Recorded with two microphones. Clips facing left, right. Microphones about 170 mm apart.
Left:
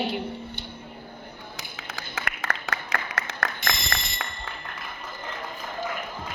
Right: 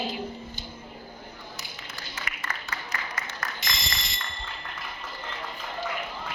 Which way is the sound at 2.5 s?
60° left (ahead or behind).